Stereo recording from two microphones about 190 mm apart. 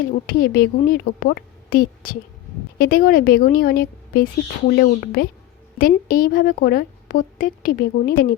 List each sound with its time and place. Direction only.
0.0 s a woman's voice: 50° left (ahead or behind)